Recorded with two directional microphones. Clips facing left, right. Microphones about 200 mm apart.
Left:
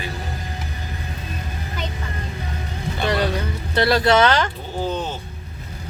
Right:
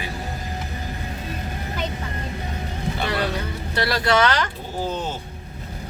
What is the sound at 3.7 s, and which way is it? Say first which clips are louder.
Speech: left 4 dB; 25° left (ahead or behind).